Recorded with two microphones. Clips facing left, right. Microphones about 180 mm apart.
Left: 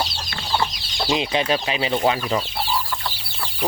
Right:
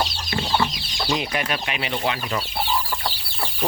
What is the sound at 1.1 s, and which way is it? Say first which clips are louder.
Speech: left 4 dB; 20° left (ahead or behind).